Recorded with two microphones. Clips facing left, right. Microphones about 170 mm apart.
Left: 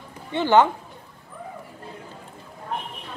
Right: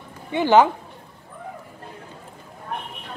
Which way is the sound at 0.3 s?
15° right (ahead or behind).